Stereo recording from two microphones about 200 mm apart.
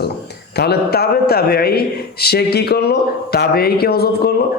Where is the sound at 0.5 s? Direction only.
55° left (ahead or behind).